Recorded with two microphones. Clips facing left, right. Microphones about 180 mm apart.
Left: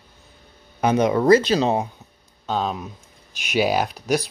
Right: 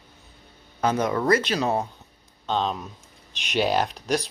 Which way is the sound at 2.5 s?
5° left (ahead or behind).